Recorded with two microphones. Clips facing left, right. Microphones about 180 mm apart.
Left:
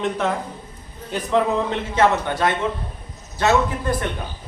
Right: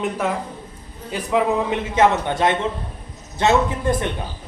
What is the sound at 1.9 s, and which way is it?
A man's voice, 20° right (ahead or behind).